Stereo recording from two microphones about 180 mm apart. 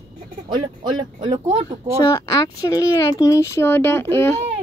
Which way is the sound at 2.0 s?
20° left (ahead or behind).